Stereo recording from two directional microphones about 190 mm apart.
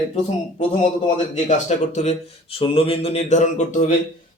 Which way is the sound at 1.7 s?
35° left (ahead or behind).